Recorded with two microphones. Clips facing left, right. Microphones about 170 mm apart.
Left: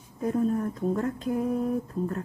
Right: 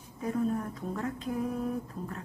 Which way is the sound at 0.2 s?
45° left (ahead or behind).